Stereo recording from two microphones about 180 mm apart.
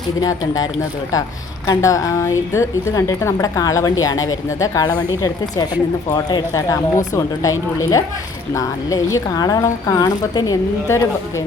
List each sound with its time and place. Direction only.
0.2 s a woman's voice: 20° left (ahead or behind)
6.1 s a woman's voice: 20° left (ahead or behind)